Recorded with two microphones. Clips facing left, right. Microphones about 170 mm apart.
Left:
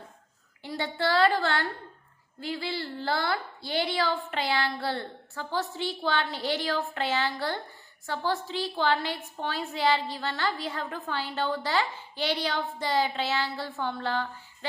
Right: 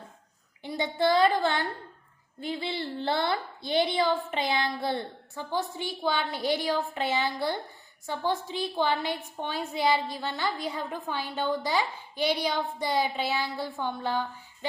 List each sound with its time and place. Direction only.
0.6 s a woman's voice: 20° right (ahead or behind)